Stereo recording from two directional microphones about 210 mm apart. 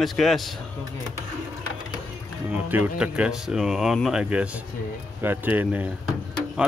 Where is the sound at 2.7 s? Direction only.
5° right (ahead or behind).